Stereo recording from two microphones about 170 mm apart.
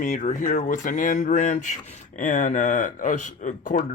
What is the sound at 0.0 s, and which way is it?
Speech, 50° left (ahead or behind).